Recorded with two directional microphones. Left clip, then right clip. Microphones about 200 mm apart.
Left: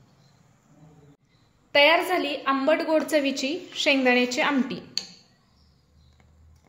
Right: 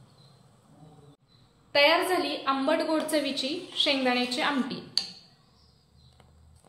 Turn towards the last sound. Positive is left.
turn(degrees=35)  # may be behind; listen again after turning